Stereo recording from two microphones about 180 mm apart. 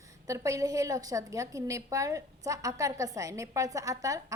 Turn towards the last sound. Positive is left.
turn(degrees=-20)  # may be behind; listen again after turning